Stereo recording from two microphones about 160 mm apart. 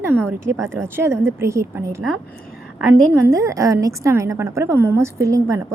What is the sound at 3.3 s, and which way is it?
A woman's voice, 20° right (ahead or behind).